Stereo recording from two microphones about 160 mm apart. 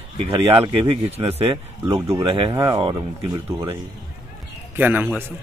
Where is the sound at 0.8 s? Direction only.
40° right (ahead or behind).